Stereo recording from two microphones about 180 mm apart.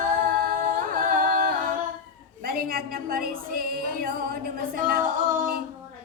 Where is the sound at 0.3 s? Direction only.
50° right (ahead or behind).